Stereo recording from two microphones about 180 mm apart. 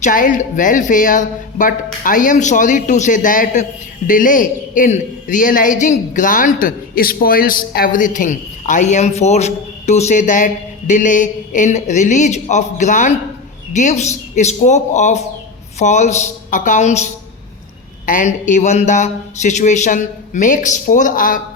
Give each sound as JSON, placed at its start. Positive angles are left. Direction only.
{"t": 0.0, "sound": "a man's voice", "side_deg": 45}